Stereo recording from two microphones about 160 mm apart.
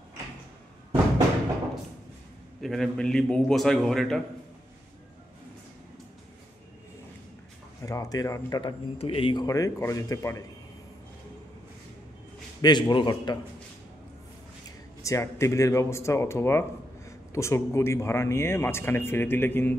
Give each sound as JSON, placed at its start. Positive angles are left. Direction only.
{"t": 2.6, "sound": "a man's voice", "side_deg": 0}
{"t": 7.8, "sound": "speech", "side_deg": 20}
{"t": 12.6, "sound": "speech", "side_deg": 25}
{"t": 15.0, "sound": "speech", "side_deg": 20}